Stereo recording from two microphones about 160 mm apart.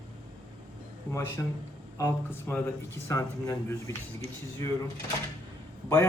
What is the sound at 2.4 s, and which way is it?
A man's voice, 15° left (ahead or behind).